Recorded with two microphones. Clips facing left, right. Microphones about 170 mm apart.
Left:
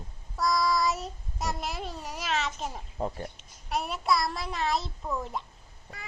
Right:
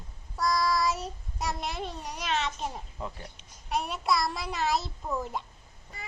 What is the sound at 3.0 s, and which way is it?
Speech, 40° left (ahead or behind).